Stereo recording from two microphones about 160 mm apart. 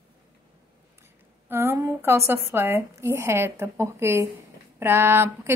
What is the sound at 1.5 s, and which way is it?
A woman's voice, 15° right (ahead or behind).